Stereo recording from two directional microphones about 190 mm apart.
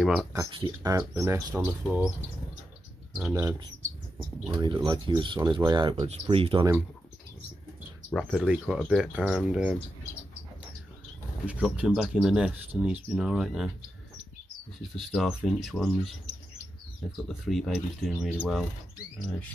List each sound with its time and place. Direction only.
0.0 s speech: 5° right (ahead or behind)
0.3 s speech: 20° right (ahead or behind); by 2.1 s 5° right (ahead or behind)
3.3 s speech: 20° right (ahead or behind)
8.1 s speech: 5° left (ahead or behind)
11.4 s speech: 5° right (ahead or behind)
15.0 s speech: centre (ahead or behind)
17.3 s speech: centre (ahead or behind)